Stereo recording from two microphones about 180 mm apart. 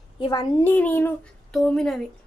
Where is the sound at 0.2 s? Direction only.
25° left (ahead or behind).